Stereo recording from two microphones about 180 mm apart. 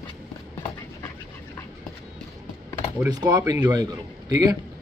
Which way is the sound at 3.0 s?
25° right (ahead or behind).